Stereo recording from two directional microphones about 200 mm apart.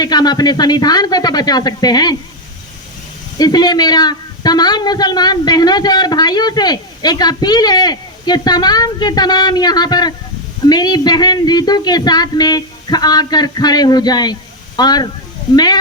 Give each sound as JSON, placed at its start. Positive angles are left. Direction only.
{"t": 0.0, "sound": "speech", "side_deg": 20}
{"t": 3.3, "sound": "speech", "side_deg": 20}